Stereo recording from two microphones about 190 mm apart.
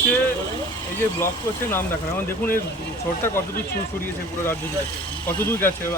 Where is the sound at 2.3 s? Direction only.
10° left (ahead or behind).